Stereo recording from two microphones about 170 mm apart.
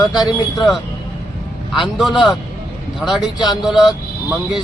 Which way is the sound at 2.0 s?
Centre (ahead or behind).